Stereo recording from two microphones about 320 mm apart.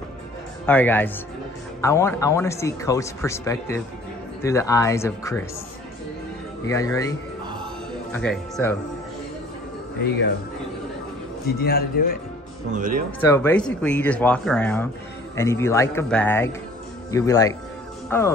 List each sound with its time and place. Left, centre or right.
0.7 s speech: centre
6.7 s speech: centre
8.1 s speech: centre
11.4 s a man's voice: left
12.7 s speech: right
13.2 s speech: centre